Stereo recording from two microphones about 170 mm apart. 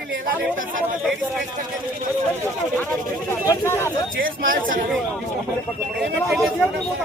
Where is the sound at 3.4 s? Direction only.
15° left (ahead or behind).